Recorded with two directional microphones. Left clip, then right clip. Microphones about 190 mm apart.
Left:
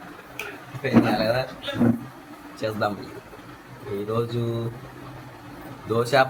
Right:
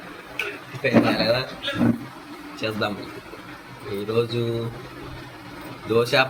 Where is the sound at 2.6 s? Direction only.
25° left (ahead or behind).